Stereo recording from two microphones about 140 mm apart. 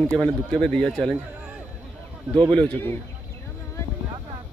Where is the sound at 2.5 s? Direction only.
10° left (ahead or behind).